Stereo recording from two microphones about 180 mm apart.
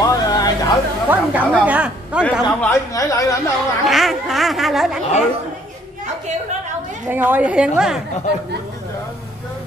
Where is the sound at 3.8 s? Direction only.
Centre (ahead or behind).